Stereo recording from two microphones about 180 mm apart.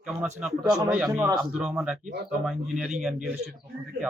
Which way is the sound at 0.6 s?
20° right (ahead or behind).